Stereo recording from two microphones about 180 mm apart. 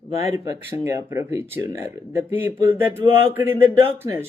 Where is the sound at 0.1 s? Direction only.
35° left (ahead or behind).